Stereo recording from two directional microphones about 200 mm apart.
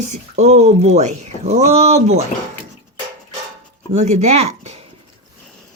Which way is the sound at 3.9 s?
35° right (ahead or behind).